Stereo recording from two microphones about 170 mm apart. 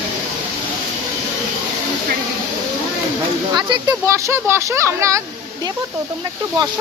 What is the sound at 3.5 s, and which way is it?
Speech, 25° right (ahead or behind).